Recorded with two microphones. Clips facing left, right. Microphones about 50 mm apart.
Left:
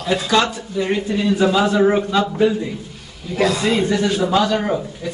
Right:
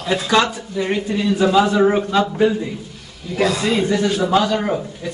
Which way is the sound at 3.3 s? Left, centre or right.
Centre.